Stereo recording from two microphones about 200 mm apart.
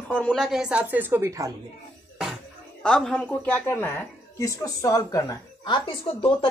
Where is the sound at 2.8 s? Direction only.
5° left (ahead or behind).